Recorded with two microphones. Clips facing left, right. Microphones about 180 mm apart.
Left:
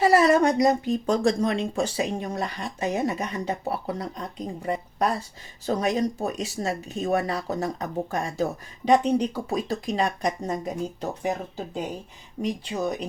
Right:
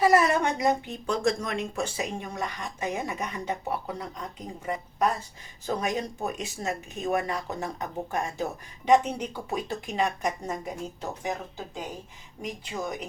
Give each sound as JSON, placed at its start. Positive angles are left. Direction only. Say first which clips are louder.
{"t": 0.0, "sound": "speech", "louder": "left 4 dB", "side_deg": 30}